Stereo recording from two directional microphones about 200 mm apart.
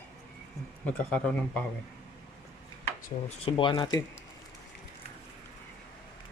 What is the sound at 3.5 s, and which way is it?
Speech, 25° left (ahead or behind).